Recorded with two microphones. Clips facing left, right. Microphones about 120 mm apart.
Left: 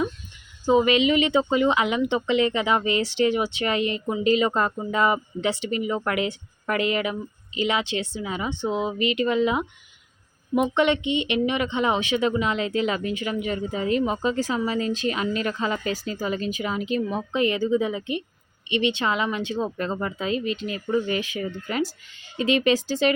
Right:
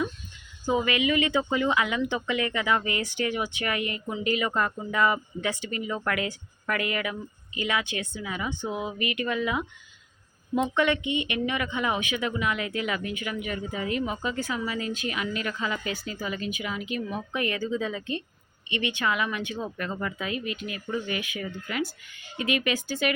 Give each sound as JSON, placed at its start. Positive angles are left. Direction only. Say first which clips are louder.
{"t": 0.7, "sound": "speech", "louder": "left 6 dB", "side_deg": 25}